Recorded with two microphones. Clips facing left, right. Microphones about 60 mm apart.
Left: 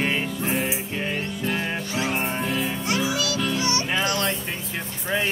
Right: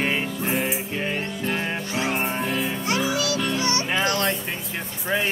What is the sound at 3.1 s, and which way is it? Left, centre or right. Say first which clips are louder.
Music: right 1 dB; right.